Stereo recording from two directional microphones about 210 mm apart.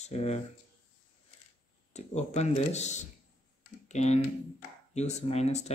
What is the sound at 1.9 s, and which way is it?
Speech, 30° left (ahead or behind).